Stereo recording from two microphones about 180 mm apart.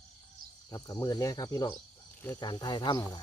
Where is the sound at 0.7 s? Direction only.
20° left (ahead or behind).